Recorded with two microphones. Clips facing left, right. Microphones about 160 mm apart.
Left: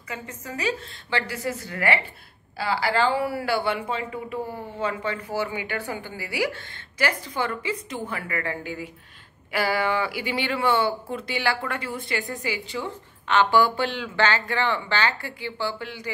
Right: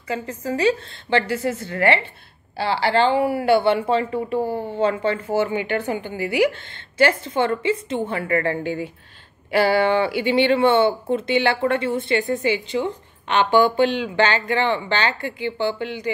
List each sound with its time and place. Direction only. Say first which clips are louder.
0.1 s a woman's voice: right 9 dB; 30° right (ahead or behind)